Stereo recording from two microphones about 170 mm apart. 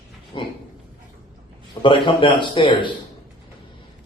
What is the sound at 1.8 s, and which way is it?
Speech, 30° left (ahead or behind).